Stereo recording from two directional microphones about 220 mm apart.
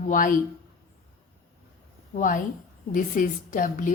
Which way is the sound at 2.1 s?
35° left (ahead or behind).